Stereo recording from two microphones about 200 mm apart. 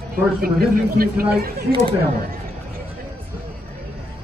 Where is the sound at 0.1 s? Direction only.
50° right (ahead or behind).